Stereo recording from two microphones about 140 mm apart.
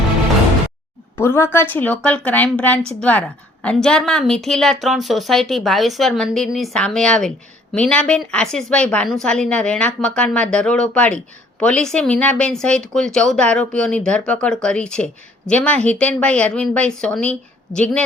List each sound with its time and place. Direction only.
1.1 s a woman's voice: 20° left (ahead or behind)